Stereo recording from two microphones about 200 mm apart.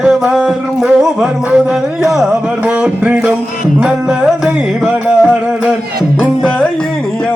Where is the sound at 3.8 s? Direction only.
5° right (ahead or behind).